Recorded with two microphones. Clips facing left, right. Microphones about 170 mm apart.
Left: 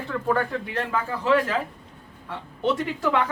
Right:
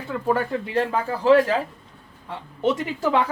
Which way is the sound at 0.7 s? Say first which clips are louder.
Right 6 dB; 30° right (ahead or behind).